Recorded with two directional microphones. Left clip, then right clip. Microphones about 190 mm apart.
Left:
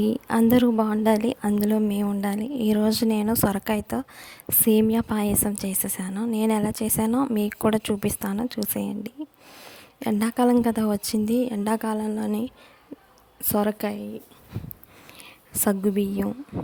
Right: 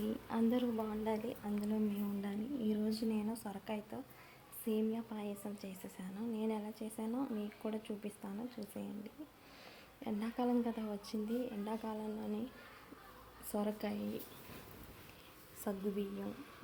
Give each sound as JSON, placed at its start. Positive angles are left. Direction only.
{"t": 0.0, "sound": "a woman's voice", "side_deg": 50}
{"t": 13.5, "sound": "a woman's voice", "side_deg": 45}